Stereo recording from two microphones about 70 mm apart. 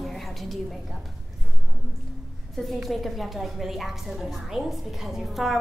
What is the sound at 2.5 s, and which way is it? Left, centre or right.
A woman's voice, centre.